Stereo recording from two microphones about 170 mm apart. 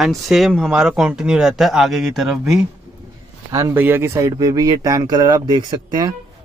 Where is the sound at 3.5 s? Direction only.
15° right (ahead or behind).